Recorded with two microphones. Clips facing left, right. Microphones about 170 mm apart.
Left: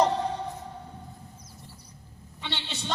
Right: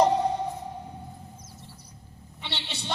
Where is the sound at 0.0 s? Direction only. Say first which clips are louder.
Right 3 dB; 15° right (ahead or behind).